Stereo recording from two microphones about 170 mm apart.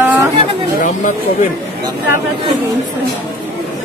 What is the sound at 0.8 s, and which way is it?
Speech, 55° left (ahead or behind).